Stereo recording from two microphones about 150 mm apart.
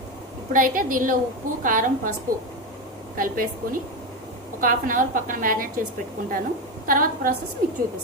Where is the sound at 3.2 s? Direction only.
70° right (ahead or behind).